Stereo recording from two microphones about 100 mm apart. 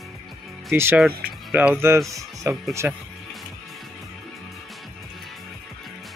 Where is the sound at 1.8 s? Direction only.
25° right (ahead or behind).